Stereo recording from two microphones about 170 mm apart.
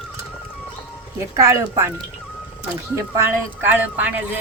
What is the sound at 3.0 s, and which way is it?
A woman's voice, 15° right (ahead or behind).